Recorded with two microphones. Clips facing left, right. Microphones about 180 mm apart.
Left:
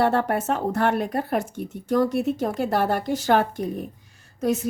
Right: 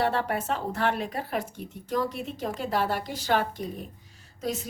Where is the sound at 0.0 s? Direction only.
50° left (ahead or behind).